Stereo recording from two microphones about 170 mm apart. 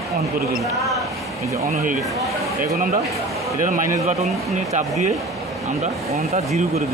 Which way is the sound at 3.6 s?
50° right (ahead or behind).